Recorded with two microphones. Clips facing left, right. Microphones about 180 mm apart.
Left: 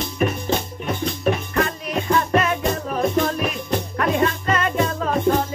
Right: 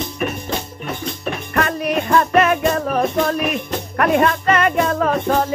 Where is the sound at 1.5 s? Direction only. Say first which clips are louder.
Right 3 dB; 65° right (ahead or behind).